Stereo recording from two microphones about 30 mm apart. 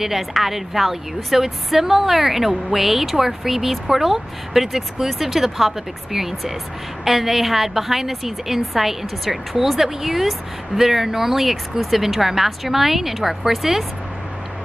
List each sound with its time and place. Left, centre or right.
0.0 s speech: centre